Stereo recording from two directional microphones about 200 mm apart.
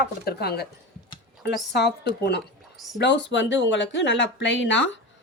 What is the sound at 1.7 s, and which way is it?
Speech, 55° left (ahead or behind).